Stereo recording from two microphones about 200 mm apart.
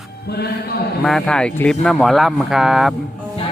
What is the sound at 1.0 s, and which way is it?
Speech, 5° left (ahead or behind).